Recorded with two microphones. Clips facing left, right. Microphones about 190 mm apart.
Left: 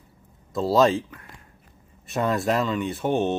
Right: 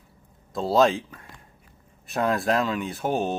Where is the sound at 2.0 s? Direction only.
Centre (ahead or behind).